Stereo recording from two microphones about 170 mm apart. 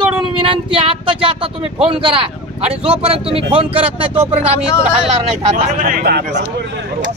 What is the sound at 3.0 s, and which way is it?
Speech, 35° right (ahead or behind).